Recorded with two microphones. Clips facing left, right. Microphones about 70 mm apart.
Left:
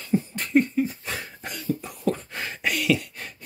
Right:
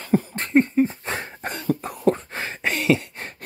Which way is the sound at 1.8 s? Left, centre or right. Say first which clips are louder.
Right 6 dB; right.